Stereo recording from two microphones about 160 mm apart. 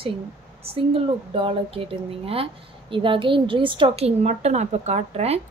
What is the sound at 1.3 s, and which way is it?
Speech, 35° right (ahead or behind).